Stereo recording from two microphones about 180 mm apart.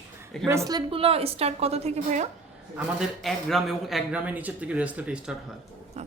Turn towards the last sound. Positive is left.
turn(degrees=-5)  # may be behind; listen again after turning